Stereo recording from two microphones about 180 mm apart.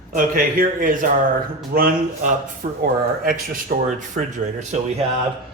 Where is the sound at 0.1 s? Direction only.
50° right (ahead or behind).